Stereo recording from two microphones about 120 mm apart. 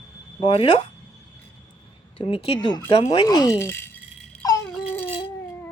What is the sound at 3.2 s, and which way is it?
Speech, 35° left (ahead or behind).